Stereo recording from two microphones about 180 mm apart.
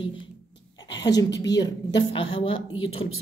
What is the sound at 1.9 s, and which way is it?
A woman's voice, 25° left (ahead or behind).